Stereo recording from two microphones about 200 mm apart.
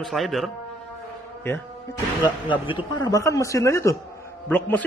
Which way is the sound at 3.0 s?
15° left (ahead or behind).